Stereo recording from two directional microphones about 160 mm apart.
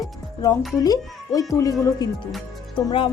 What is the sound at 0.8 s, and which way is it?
Speech, 20° left (ahead or behind).